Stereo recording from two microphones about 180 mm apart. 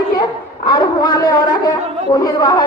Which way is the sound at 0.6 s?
25° left (ahead or behind).